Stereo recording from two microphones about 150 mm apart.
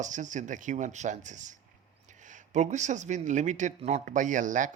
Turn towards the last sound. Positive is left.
turn(degrees=-60)  # may be behind; listen again after turning